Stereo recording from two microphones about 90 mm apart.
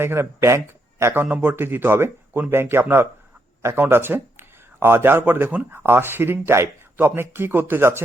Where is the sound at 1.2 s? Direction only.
20° right (ahead or behind).